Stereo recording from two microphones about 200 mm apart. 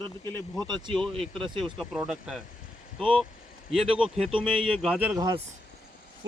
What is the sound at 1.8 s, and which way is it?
Speech, centre (ahead or behind).